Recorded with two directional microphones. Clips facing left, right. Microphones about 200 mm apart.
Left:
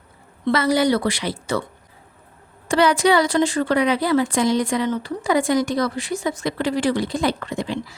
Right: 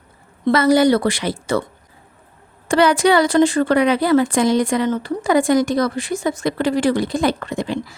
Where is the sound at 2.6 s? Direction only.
55° right (ahead or behind).